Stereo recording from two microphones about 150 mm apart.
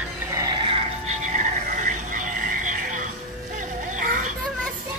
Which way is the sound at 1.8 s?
60° right (ahead or behind).